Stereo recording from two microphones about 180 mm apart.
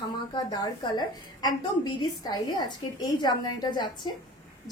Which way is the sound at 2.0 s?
20° left (ahead or behind).